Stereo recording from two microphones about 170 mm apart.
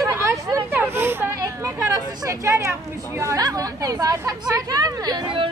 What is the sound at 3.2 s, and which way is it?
A woman's voice, 20° right (ahead or behind).